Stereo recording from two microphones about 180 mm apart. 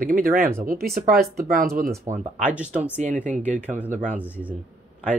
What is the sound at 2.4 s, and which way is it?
Speech, 5° right (ahead or behind).